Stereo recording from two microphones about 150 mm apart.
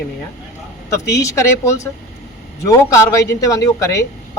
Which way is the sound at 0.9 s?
20° left (ahead or behind).